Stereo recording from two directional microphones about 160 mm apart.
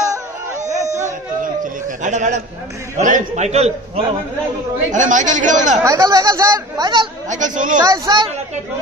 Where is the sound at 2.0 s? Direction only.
50° right (ahead or behind).